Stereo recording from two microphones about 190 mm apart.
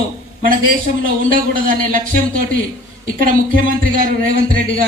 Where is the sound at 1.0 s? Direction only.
50° right (ahead or behind).